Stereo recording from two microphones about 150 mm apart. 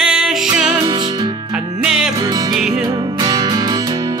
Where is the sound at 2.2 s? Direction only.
25° right (ahead or behind).